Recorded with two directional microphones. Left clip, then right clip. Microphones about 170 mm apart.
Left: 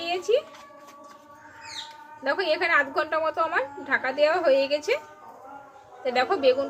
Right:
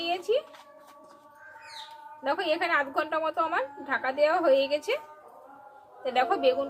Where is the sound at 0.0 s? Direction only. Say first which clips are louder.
Left 3 dB; centre (ahead or behind).